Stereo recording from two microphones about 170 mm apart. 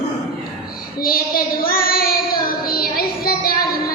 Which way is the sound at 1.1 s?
60° left (ahead or behind).